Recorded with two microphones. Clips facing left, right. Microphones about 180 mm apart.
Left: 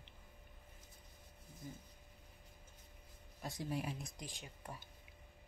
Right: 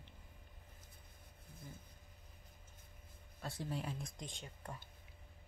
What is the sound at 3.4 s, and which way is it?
Speech, 10° left (ahead or behind).